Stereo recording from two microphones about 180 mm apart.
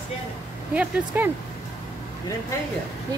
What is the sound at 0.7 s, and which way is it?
Speech, 10° right (ahead or behind).